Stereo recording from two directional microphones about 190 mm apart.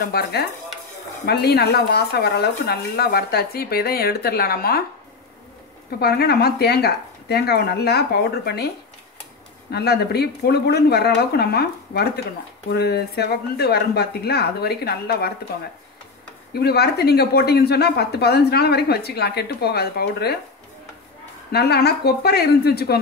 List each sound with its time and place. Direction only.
0.0 s speech: 55° left (ahead or behind)
5.9 s speech: 55° left (ahead or behind)
16.5 s speech: 55° left (ahead or behind)
21.5 s speech: 55° left (ahead or behind)